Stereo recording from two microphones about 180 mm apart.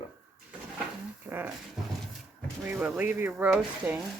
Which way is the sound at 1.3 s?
15° right (ahead or behind).